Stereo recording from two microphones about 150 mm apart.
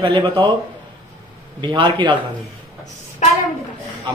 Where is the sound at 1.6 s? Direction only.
30° right (ahead or behind).